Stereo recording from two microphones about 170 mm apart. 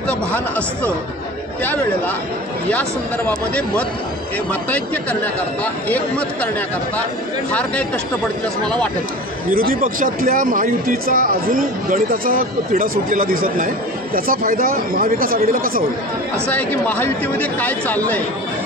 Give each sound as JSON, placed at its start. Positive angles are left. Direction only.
{"t": 0.3, "sound": "a man's voice", "side_deg": 10}
{"t": 3.3, "sound": "speech", "side_deg": 5}
{"t": 9.5, "sound": "speech", "side_deg": -55}
{"t": 16.4, "sound": "speech", "side_deg": 10}